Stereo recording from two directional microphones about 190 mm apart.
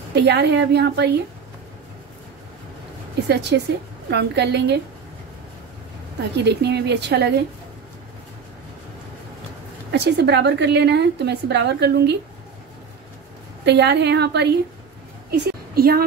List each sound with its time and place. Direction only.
0.1 s a woman's voice: 60° right (ahead or behind)
3.3 s a woman's voice: 60° right (ahead or behind)
6.3 s a woman's voice: 60° right (ahead or behind)
9.8 s a woman's voice: 65° right (ahead or behind)
13.7 s a woman's voice: 65° right (ahead or behind)
15.3 s a sound: 55° right (ahead or behind)